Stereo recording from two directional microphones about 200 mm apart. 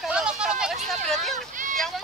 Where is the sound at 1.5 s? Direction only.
40° right (ahead or behind).